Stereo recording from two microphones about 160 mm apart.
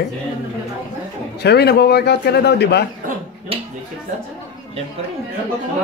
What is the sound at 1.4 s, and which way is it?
A man's voice, 90° left.